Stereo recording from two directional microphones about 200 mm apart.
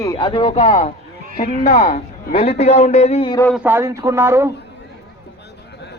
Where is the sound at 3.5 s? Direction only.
10° right (ahead or behind).